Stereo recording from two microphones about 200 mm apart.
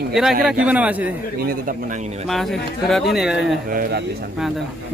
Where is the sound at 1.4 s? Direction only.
45° right (ahead or behind).